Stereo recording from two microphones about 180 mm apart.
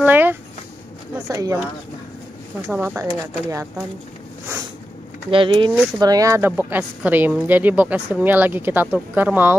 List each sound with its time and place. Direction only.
0.0 s a sound: 10° right (ahead or behind)
1.3 s a woman's voice: 15° right (ahead or behind)
2.7 s a woman's voice: 5° right (ahead or behind)
3.0 s a woman's voice: 20° right (ahead or behind)
5.3 s a woman's voice: 30° right (ahead or behind); by 9.6 s 10° right (ahead or behind)